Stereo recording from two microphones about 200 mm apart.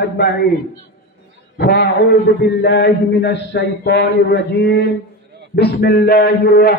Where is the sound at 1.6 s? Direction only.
55° left (ahead or behind).